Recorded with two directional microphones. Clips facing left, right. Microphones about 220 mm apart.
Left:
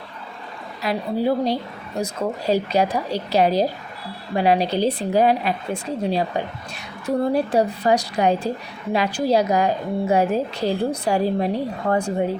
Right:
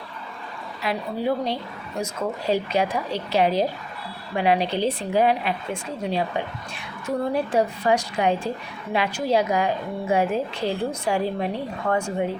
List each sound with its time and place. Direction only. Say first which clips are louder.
0.8 s a woman's voice: left 4 dB; 40° left (ahead or behind)